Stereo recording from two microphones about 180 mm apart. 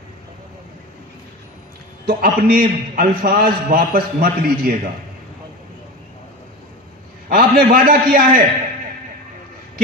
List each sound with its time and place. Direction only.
2.0 s a man's voice: 50° right (ahead or behind)
7.2 s a man's voice: 55° right (ahead or behind)